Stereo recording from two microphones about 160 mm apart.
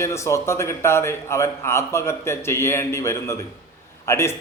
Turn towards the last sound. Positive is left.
turn(degrees=15)  # may be behind; listen again after turning